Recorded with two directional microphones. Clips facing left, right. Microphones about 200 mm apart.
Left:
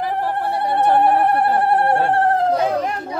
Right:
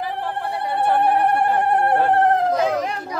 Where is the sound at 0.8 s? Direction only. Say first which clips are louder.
Left 2 dB; 40° left (ahead or behind).